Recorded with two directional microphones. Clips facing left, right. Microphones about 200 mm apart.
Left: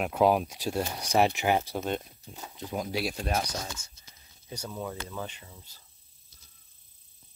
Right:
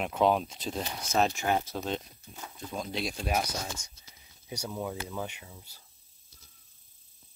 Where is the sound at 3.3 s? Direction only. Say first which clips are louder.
Even; 15° right (ahead or behind).